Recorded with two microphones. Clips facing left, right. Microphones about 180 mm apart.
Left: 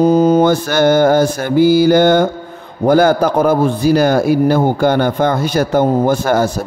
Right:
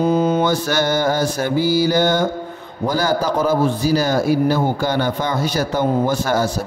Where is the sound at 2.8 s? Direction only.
55° left (ahead or behind).